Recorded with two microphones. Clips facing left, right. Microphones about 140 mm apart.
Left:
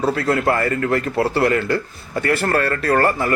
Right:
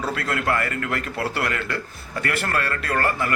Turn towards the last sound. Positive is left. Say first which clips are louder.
# left 6 dB
turn(degrees=40)  # may be behind; listen again after turning